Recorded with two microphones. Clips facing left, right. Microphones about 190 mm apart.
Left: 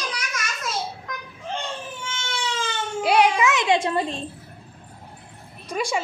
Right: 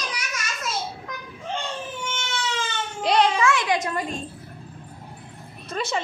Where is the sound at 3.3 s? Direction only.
20° left (ahead or behind).